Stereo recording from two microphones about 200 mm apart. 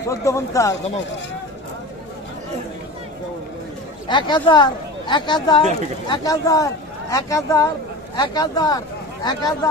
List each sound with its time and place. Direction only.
0.1 s speech: 15° left (ahead or behind)
4.1 s speech: 25° left (ahead or behind)